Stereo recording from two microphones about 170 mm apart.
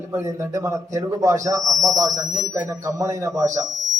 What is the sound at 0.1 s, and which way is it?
A man's voice, 15° right (ahead or behind).